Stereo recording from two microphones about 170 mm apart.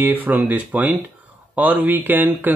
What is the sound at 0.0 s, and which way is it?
Speech, 10° right (ahead or behind).